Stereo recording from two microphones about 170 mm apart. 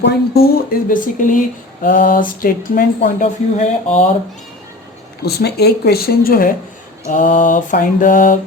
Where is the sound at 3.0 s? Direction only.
45° left (ahead or behind).